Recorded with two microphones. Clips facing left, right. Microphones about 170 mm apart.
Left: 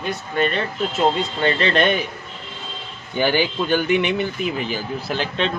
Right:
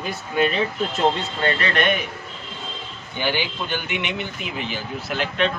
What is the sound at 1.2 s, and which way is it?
Speech, 25° left (ahead or behind).